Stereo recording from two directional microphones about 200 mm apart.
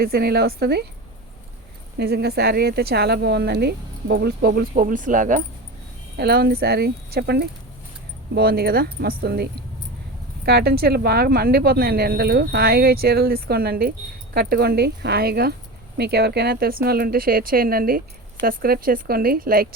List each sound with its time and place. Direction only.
0.0 s a woman's voice: 50° right (ahead or behind)
2.0 s a woman's voice: 55° right (ahead or behind)
6.1 s a woman's voice: 50° right (ahead or behind)